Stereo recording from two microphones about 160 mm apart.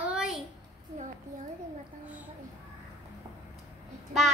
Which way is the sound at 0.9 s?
50° right (ahead or behind).